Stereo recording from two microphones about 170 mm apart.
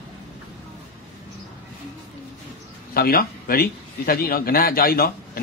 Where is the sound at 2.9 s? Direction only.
60° left (ahead or behind).